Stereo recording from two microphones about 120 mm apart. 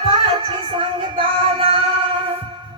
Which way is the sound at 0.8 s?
50° right (ahead or behind).